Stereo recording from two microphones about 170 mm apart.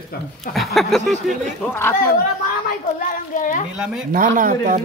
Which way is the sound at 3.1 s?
50° left (ahead or behind).